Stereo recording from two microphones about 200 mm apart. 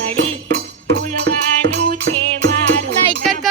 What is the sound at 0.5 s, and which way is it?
Music, 55° right (ahead or behind).